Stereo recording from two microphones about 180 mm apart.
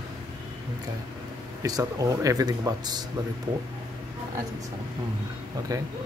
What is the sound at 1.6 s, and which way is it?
Speech, 20° right (ahead or behind).